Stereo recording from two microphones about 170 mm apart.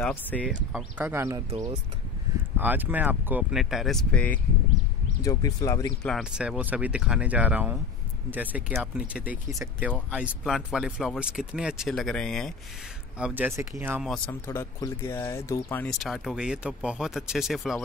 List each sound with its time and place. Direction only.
0.0 s speech: 10° left (ahead or behind)
0.5 s speech: 5° right (ahead or behind)
2.5 s speech: 10° right (ahead or behind); by 4.4 s 10° left (ahead or behind)
5.2 s speech: 20° left (ahead or behind)
6.0 s speech: centre (ahead or behind)
13.2 s speech: 10° right (ahead or behind)
14.0 s speech: 5° left (ahead or behind)
14.4 s speech: 15° left (ahead or behind)
15.8 s speech: centre (ahead or behind)